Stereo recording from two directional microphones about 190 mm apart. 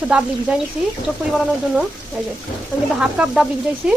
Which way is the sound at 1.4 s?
5° right (ahead or behind).